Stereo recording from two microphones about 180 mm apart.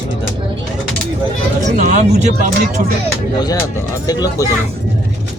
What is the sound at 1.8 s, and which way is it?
Speech, 40° right (ahead or behind).